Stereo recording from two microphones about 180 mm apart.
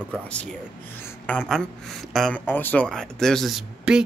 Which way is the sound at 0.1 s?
5° left (ahead or behind).